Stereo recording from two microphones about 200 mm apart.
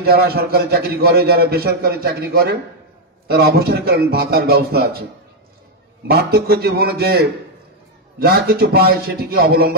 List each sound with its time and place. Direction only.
0.0 s a man's voice: 50° right (ahead or behind)
6.0 s a man's voice: 50° right (ahead or behind)